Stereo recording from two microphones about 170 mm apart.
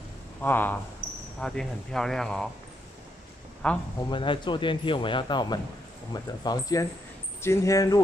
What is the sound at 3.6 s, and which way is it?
Speech, 5° left (ahead or behind).